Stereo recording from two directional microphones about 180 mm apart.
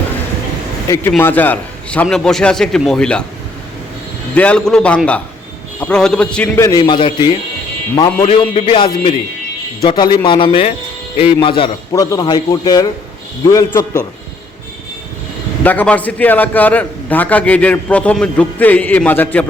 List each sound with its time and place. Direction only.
1.1 s a man's voice: 10° left (ahead or behind)
4.4 s a man's voice: 5° left (ahead or behind)
6.6 s a man's voice: 20° left (ahead or behind)
15.6 s a man's voice: 10° left (ahead or behind)